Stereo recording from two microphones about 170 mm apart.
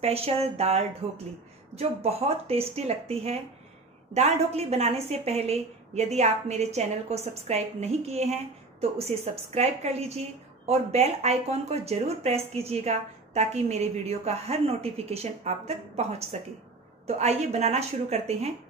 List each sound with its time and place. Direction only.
0.0 s speech: 35° right (ahead or behind)